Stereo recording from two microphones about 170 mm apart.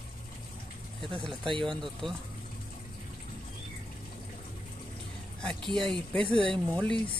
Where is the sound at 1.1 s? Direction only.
Centre (ahead or behind).